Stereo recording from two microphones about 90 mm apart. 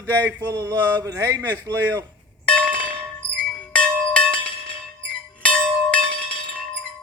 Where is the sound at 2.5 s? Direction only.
10° left (ahead or behind).